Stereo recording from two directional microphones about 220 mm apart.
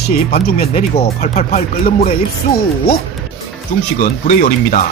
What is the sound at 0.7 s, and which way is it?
Speech, 30° left (ahead or behind).